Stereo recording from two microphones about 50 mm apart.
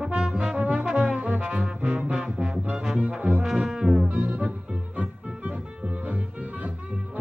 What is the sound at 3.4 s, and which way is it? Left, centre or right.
Brass instrument, centre.